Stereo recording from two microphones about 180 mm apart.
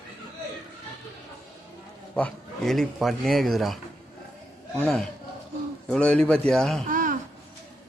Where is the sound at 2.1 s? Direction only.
5° left (ahead or behind).